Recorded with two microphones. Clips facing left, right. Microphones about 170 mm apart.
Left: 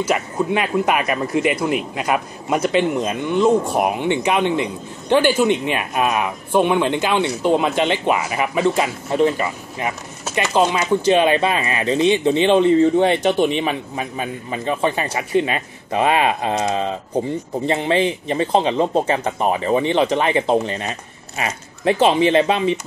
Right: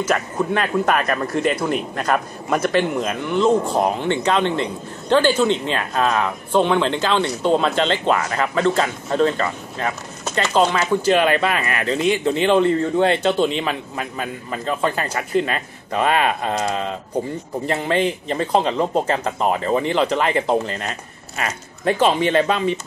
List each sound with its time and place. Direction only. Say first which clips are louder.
0.1 s speech: even; 10° left (ahead or behind)